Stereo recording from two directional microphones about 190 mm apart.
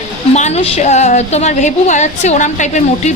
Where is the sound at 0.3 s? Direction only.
35° left (ahead or behind).